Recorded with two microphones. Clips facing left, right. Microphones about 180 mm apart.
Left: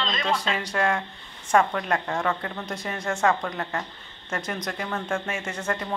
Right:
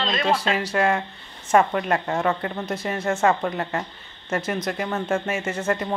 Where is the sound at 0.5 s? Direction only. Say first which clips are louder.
Right 4 dB; 5° right (ahead or behind).